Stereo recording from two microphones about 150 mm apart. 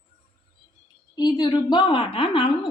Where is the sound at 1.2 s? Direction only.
25° left (ahead or behind).